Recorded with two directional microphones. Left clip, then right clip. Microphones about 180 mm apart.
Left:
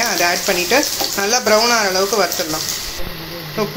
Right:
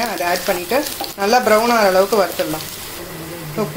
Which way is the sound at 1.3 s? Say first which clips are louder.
Right 2 dB; centre (ahead or behind).